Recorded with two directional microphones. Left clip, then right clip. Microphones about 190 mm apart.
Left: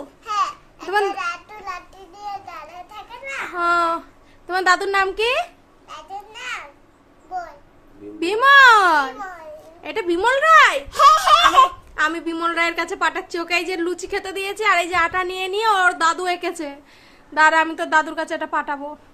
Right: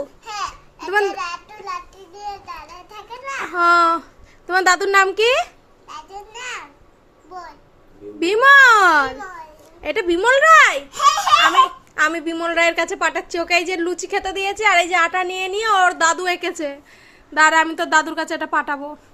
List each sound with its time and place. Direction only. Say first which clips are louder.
0.3 s babbling: left 9 dB; 15° left (ahead or behind)
0.9 s a child's voice: right 1 dB; 10° right (ahead or behind)
1.2 s a sound: left 1 dB; 20° left (ahead or behind)
3.4 s a sound: right 5 dB; 25° right (ahead or behind)
4.4 s a woman's voice: right 2 dB; 20° right (ahead or behind)
5.9 s babbling: even; 20° left (ahead or behind)
8.2 s a woman's voice: right 1 dB; 20° right (ahead or behind)
10.9 s a sound: left 5 dB; 55° left (ahead or behind)
11.9 s a woman's voice: right 3 dB; 15° right (ahead or behind)